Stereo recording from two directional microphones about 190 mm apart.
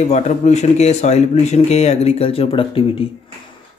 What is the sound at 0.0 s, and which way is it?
Speech, 35° left (ahead or behind).